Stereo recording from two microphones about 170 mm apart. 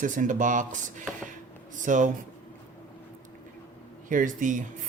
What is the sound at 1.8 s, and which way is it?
Speech, 50° right (ahead or behind).